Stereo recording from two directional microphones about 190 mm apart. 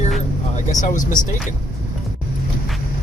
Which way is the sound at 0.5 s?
40° left (ahead or behind).